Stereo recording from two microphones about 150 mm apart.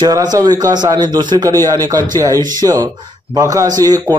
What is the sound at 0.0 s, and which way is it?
A man's voice, 25° right (ahead or behind).